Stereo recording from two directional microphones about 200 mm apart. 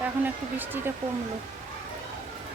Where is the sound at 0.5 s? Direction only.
10° right (ahead or behind).